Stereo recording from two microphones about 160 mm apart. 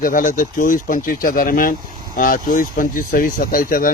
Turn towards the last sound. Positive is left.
turn(degrees=60)  # may be behind; listen again after turning